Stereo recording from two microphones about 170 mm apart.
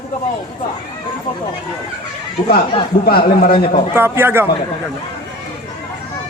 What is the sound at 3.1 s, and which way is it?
Speech, 60° left (ahead or behind).